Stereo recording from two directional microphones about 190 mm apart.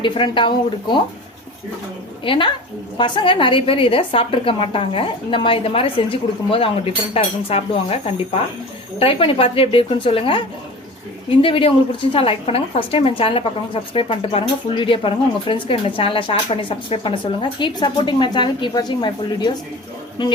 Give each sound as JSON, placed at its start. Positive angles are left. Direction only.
{"t": 0.0, "sound": "a woman's voice", "side_deg": 25}
{"t": 2.2, "sound": "a woman's voice", "side_deg": 25}
{"t": 11.4, "sound": "a woman's voice", "side_deg": 30}